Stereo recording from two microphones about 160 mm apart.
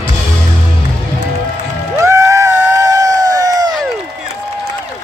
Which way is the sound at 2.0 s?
20° right (ahead or behind).